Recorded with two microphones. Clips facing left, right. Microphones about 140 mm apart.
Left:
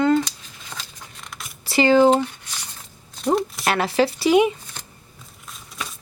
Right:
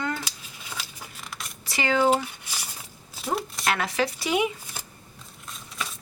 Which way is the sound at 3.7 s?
30° left (ahead or behind).